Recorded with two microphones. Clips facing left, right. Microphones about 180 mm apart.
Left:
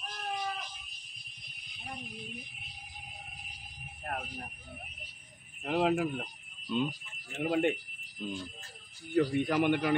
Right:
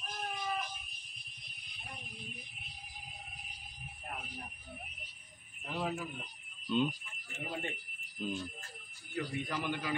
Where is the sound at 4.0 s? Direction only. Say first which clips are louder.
Left 7 dB; 65° left (ahead or behind).